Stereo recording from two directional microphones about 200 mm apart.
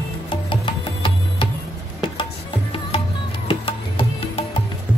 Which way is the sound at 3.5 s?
25° left (ahead or behind).